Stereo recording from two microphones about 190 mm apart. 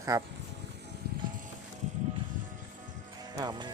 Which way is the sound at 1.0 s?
55° right (ahead or behind).